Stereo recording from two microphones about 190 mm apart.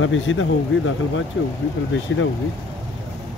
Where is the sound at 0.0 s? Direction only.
90° left.